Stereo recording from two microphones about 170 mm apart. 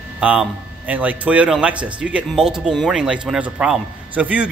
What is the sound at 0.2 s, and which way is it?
A man's voice, 10° right (ahead or behind).